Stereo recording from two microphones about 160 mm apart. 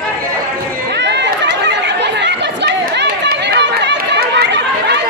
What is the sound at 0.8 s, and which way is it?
Chatter, 90° right.